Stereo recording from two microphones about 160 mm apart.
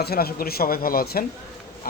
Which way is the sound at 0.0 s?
75° left (ahead or behind).